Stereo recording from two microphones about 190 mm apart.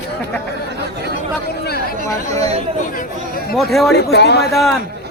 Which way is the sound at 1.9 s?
35° right (ahead or behind).